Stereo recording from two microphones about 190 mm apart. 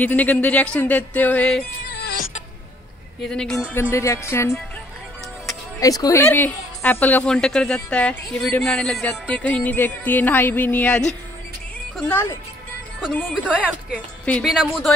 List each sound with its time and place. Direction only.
0.0 s a woman's voice: 10° left (ahead or behind)
2.0 s music: 55° left (ahead or behind)
3.2 s speech: 5° left (ahead or behind)
3.9 s a woman's voice: 15° left (ahead or behind)
5.8 s a woman's voice: 20° left (ahead or behind)
13.1 s speech: 5° right (ahead or behind)